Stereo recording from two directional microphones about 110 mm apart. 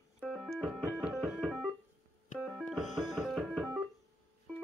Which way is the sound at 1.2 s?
Centre (ahead or behind).